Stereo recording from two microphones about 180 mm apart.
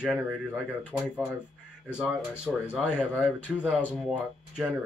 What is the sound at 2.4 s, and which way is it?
Speech, 5° right (ahead or behind).